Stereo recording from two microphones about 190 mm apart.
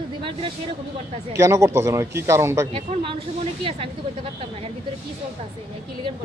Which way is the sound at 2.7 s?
30° right (ahead or behind).